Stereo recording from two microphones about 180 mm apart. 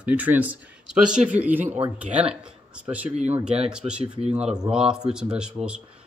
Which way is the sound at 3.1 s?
40° right (ahead or behind).